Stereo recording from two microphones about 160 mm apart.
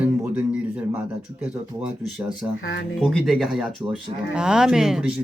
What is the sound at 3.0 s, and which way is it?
Speech, centre (ahead or behind).